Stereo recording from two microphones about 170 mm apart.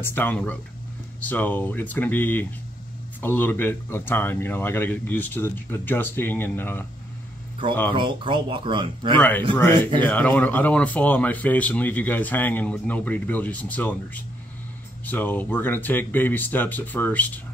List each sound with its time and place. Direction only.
0.0 s speech: 10° left (ahead or behind)
7.9 s speech: 30° right (ahead or behind)
9.9 s speech: 10° left (ahead or behind)